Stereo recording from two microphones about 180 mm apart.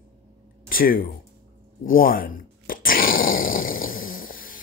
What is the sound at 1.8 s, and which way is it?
Dog, 50° left (ahead or behind).